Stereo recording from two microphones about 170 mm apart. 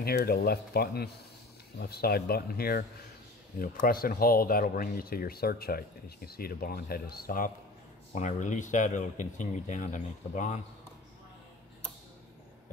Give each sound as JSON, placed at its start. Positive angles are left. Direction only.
{"t": 0.0, "sound": "speech", "side_deg": 65}
{"t": 8.1, "sound": "speech", "side_deg": 45}